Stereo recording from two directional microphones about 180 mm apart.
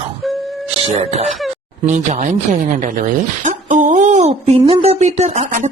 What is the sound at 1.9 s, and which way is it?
Speech, 40° right (ahead or behind).